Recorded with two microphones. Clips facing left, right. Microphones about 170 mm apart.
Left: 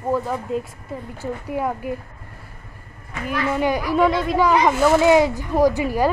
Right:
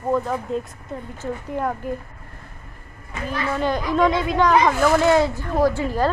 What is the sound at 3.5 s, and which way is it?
Speech, 10° left (ahead or behind).